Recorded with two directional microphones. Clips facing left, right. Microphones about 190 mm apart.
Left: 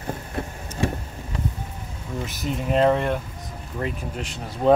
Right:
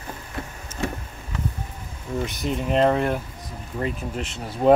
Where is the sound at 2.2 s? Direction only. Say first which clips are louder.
Left 1 dB; 5° left (ahead or behind).